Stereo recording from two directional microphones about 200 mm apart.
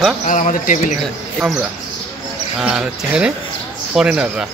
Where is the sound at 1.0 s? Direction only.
Centre (ahead or behind).